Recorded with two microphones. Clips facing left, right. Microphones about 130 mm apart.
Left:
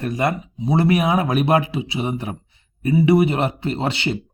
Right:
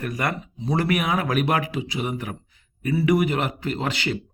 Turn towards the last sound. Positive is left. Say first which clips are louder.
# left 3 dB
turn(degrees=25)  # may be behind; listen again after turning